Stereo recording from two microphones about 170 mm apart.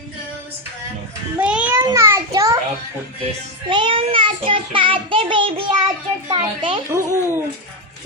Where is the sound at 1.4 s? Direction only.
5° right (ahead or behind).